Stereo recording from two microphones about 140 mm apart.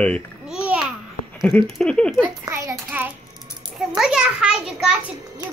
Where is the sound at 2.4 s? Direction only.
20° right (ahead or behind).